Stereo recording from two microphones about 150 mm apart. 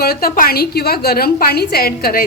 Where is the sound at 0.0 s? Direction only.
85° left.